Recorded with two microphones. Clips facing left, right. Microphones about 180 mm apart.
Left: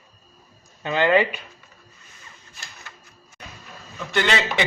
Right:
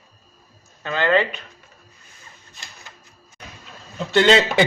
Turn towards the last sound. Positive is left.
turn(degrees=-30)  # may be behind; listen again after turning